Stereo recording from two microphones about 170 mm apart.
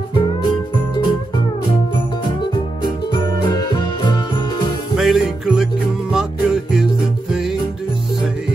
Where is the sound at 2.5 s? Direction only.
25° left (ahead or behind).